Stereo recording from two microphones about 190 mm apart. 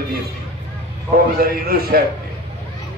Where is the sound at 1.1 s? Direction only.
50° right (ahead or behind).